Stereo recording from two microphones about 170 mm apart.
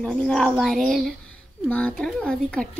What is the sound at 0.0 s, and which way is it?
Speech, 5° left (ahead or behind).